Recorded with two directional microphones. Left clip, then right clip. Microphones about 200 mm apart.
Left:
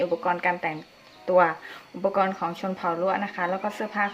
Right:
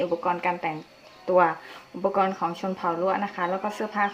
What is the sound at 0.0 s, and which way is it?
Speech, 5° left (ahead or behind).